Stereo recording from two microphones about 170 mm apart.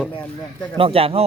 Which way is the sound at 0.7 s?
35° right (ahead or behind).